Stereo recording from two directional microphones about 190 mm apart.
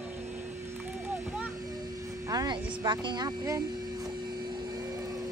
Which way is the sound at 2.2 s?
20° right (ahead or behind).